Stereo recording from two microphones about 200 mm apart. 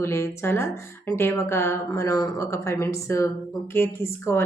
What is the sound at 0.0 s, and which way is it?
Speech, 15° left (ahead or behind).